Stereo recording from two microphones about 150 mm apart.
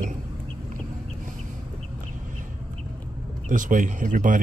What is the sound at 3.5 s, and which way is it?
Speech, 60° right (ahead or behind).